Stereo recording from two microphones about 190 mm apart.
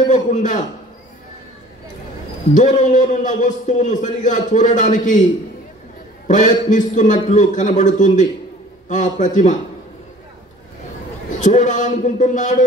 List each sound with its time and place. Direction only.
0.1 s a sound: 40° left (ahead or behind)
2.5 s a man's voice: 40° left (ahead or behind)
6.2 s a man's voice: 40° left (ahead or behind)
11.2 s a man's voice: 40° left (ahead or behind)